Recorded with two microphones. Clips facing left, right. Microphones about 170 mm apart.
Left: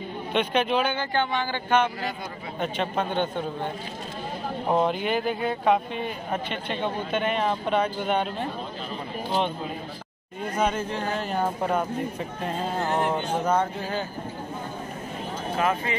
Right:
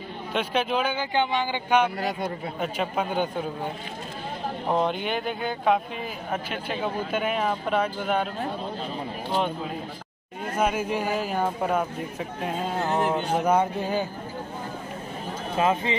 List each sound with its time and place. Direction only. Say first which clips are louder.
0.3 s speech: left 2 dB; 5° right (ahead or behind)
1.1 s speech: right 1 dB; 15° right (ahead or behind)
2.0 s a man's voice: right 4 dB; 70° right (ahead or behind)
2.6 s speech: left 1 dB; 5° right (ahead or behind)
10.5 s speech: right 1 dB; 5° right (ahead or behind)
15.5 s speech: right 2 dB; 20° right (ahead or behind)